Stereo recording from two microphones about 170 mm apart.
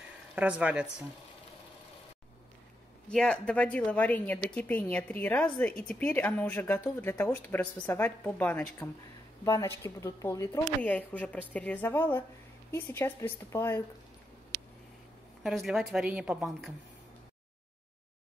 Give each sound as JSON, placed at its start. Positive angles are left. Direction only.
{"t": 0.4, "sound": "speech", "side_deg": -10}
{"t": 3.1, "sound": "a woman's voice", "side_deg": 5}
{"t": 15.4, "sound": "a woman's voice", "side_deg": 0}